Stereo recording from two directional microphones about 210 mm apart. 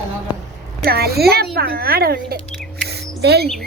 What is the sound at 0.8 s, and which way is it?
A woman's voice, 50° right (ahead or behind).